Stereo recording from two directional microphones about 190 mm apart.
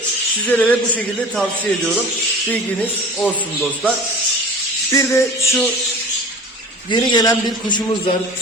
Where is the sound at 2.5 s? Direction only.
5° left (ahead or behind).